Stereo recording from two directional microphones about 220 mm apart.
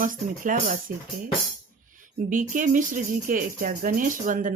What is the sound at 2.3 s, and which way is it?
Speech, 35° right (ahead or behind).